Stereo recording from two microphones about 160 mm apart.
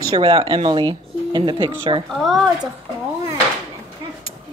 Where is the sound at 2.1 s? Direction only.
Centre (ahead or behind).